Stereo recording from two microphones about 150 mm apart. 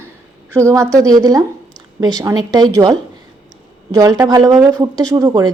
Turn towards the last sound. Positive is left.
turn(degrees=-30)  # may be behind; listen again after turning